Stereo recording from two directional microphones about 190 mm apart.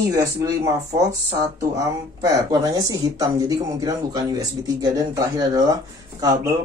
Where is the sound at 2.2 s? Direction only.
20° right (ahead or behind).